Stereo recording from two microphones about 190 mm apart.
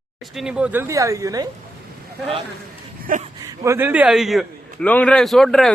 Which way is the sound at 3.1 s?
45° right (ahead or behind).